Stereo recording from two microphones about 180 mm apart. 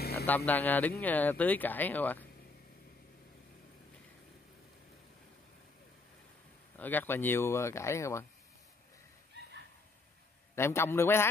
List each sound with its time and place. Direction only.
0.0 s a sound: 60° left (ahead or behind)
0.5 s speech: 10° left (ahead or behind)
6.8 s speech: 10° left (ahead or behind)
10.5 s speech: 15° left (ahead or behind)